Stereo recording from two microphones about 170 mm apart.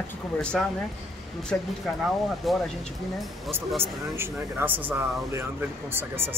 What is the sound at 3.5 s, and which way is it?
Speech, 15° right (ahead or behind).